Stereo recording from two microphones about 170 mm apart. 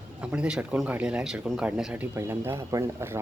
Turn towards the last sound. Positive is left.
turn(degrees=-15)  # may be behind; listen again after turning